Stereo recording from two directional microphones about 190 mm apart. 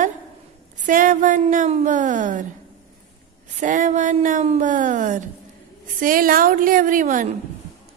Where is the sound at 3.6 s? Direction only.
45° right (ahead or behind).